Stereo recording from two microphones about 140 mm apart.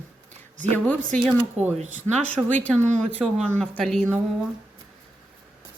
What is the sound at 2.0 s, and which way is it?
Speech, 10° left (ahead or behind).